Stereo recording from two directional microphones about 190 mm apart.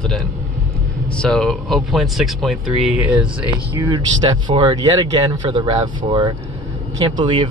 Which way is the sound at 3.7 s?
20° right (ahead or behind).